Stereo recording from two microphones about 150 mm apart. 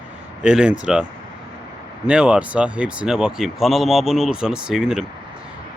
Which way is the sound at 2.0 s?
5° right (ahead or behind).